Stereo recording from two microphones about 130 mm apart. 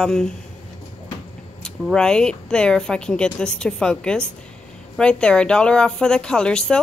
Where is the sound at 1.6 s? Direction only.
5° left (ahead or behind).